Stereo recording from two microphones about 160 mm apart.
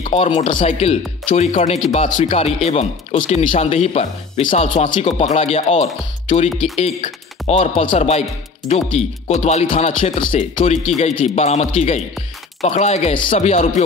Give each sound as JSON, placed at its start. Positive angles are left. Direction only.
{"t": 0.0, "sound": "speech", "side_deg": 40}